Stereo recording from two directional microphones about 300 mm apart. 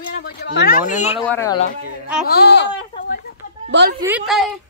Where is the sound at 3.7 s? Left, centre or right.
Right.